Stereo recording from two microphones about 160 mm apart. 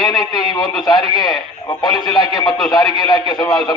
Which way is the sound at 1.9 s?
Centre (ahead or behind).